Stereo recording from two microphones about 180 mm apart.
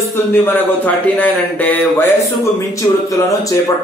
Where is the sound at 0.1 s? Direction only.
10° left (ahead or behind).